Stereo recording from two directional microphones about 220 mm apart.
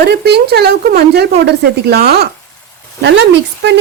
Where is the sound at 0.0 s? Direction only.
45° right (ahead or behind).